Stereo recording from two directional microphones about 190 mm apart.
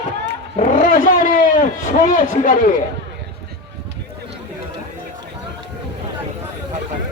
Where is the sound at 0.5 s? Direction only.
45° left (ahead or behind).